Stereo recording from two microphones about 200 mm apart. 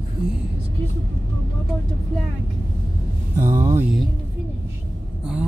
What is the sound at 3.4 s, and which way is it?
Speech, 15° right (ahead or behind).